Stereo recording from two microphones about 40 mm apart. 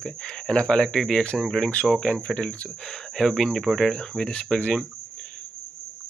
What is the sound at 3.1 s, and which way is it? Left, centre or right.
Speech, centre.